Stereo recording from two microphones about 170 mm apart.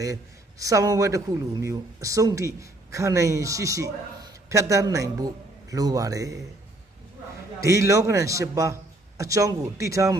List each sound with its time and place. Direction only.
0.6 s speech: 20° right (ahead or behind)
7.6 s a man's voice: 20° right (ahead or behind)